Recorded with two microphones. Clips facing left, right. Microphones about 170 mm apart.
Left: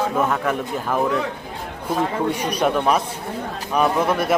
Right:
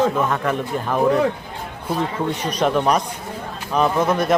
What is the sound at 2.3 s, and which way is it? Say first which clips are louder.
A man's voice: even; 10° left (ahead or behind).